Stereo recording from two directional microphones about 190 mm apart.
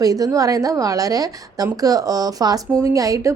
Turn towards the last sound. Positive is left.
turn(degrees=-15)  # may be behind; listen again after turning